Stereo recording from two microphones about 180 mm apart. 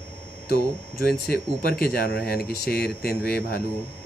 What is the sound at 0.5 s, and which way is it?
Speech, 55° left (ahead or behind).